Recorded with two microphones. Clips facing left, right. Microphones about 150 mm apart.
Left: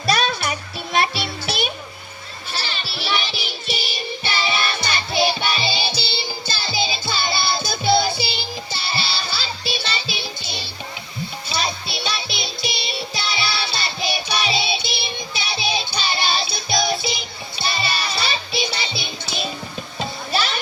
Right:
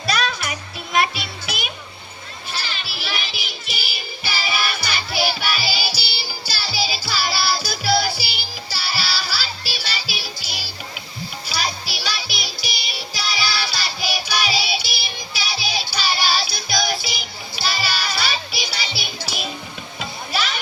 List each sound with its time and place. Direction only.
0.1 s music: 30° left (ahead or behind)